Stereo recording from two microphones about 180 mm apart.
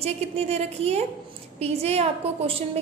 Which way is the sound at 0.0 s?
35° right (ahead or behind).